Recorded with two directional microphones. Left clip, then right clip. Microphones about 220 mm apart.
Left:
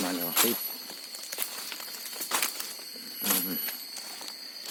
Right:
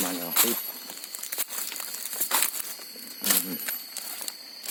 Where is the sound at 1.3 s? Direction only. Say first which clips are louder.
Right 1 dB; 45° right (ahead or behind).